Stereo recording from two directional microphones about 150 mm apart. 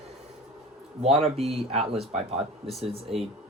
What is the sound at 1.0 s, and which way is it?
Speech, 40° right (ahead or behind).